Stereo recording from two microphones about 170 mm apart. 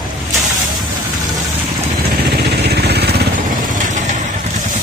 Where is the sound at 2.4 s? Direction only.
75° right (ahead or behind).